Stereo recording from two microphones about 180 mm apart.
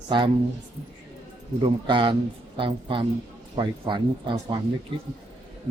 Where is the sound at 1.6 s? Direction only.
30° right (ahead or behind).